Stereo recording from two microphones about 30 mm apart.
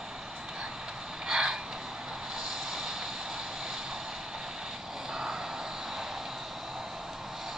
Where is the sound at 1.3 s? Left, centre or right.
Right.